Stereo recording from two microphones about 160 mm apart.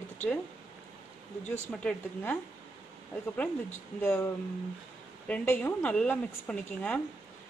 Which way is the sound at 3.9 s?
15° left (ahead or behind).